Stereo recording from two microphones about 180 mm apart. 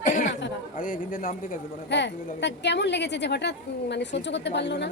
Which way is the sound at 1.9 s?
75° left (ahead or behind).